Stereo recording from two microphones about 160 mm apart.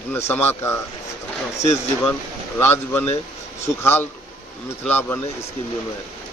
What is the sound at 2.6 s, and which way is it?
A man's voice, 15° left (ahead or behind).